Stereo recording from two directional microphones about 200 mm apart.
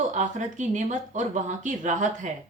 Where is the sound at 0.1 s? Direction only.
40° right (ahead or behind).